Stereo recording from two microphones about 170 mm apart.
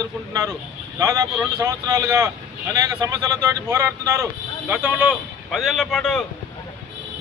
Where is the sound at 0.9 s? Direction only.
20° right (ahead or behind); by 6.2 s centre (ahead or behind).